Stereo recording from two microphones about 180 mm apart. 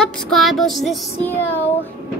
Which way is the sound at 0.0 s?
Centre (ahead or behind).